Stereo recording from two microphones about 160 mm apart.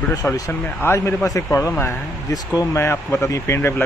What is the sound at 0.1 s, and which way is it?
Speech, 20° left (ahead or behind).